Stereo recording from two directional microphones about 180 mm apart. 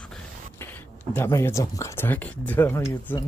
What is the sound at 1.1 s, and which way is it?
Speech, 15° left (ahead or behind).